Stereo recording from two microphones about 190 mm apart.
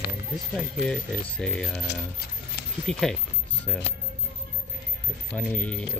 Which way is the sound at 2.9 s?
5° left (ahead or behind).